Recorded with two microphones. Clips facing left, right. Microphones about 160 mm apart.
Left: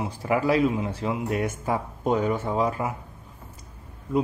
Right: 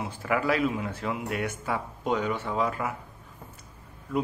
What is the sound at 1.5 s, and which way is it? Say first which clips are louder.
Speech: left 4 dB; 40° left (ahead or behind).